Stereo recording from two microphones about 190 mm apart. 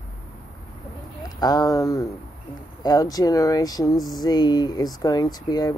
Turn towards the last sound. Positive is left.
turn(degrees=20)  # may be behind; listen again after turning